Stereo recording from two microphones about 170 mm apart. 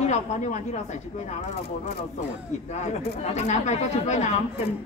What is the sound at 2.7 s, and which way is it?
Speech, 40° left (ahead or behind).